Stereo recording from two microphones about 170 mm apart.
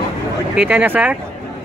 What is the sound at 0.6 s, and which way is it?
Speech, 10° right (ahead or behind).